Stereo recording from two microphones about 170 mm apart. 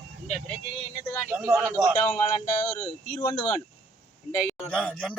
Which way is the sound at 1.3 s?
15° right (ahead or behind).